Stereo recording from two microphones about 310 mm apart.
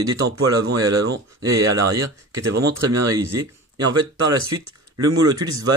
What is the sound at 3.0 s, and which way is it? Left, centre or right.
Speech, centre.